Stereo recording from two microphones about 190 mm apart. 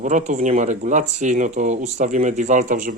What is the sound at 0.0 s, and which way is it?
Speech, 40° right (ahead or behind).